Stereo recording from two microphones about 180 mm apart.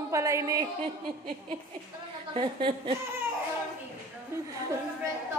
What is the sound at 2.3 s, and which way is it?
Speech, 30° right (ahead or behind).